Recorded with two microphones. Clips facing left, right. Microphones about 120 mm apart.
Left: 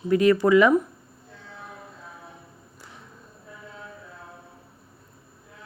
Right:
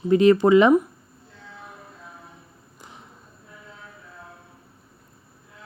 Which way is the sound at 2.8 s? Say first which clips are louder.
Right 3 dB; 20° right (ahead or behind).